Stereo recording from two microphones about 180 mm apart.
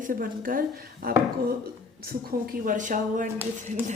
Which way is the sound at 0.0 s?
50° right (ahead or behind).